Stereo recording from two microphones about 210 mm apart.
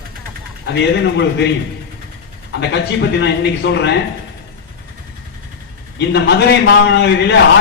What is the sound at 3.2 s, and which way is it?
Speech, 55° left (ahead or behind).